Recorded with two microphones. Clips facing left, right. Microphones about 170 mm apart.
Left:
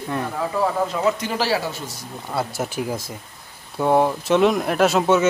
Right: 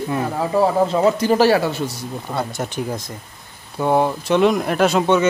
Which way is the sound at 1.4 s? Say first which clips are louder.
Right 6 dB; 60° right (ahead or behind).